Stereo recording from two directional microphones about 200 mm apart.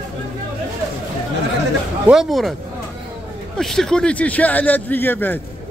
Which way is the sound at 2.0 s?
5° right (ahead or behind).